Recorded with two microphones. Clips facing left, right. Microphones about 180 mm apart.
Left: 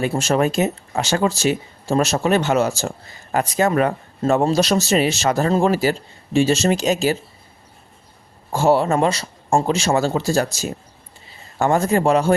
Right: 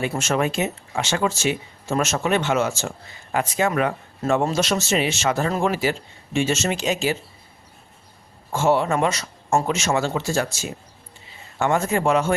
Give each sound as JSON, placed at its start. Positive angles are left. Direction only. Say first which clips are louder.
{"t": 0.0, "sound": "speech", "louder": "left 4 dB", "side_deg": 35}
{"t": 8.5, "sound": "a man's voice", "louder": "left 3 dB", "side_deg": 35}